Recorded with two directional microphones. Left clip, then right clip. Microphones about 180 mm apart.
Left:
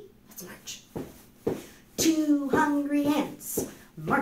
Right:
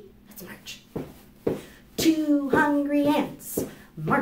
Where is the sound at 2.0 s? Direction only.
10° right (ahead or behind).